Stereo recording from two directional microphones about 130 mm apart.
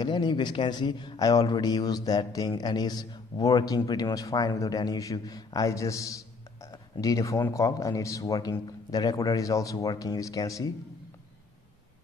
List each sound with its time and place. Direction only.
0.0 s a man's voice: 35° left (ahead or behind)